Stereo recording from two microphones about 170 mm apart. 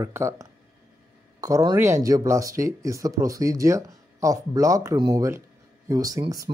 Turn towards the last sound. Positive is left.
turn(degrees=-20)  # may be behind; listen again after turning